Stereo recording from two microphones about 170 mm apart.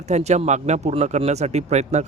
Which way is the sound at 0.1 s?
40° right (ahead or behind).